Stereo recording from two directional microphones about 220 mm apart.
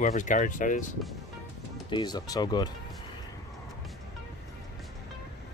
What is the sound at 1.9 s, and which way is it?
Speech, 20° left (ahead or behind).